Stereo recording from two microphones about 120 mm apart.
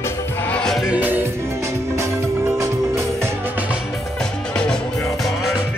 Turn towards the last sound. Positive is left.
turn(degrees=5)  # may be behind; listen again after turning